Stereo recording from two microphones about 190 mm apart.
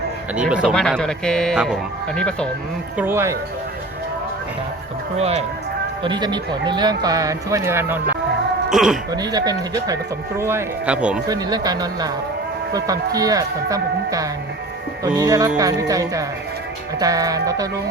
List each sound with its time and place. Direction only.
0.3 s speech: 5° right (ahead or behind)
3.0 s speech: 10° right (ahead or behind)
5.1 s speech: 35° right (ahead or behind); by 9.0 s centre (ahead or behind)
9.0 s speech: 20° right (ahead or behind)
11.3 s speech: 20° right (ahead or behind)